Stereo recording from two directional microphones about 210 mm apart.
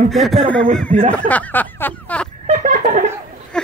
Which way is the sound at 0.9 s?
35° right (ahead or behind).